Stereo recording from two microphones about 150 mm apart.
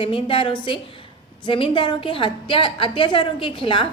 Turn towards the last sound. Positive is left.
turn(degrees=35)  # may be behind; listen again after turning